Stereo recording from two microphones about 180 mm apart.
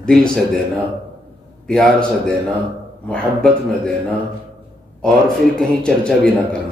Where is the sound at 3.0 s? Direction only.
5° left (ahead or behind).